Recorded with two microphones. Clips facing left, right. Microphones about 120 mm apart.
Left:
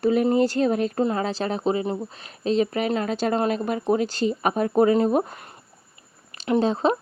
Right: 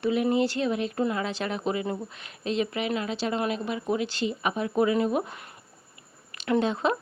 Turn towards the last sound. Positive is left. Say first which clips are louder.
# left 4 dB
turn(degrees=35)  # may be behind; listen again after turning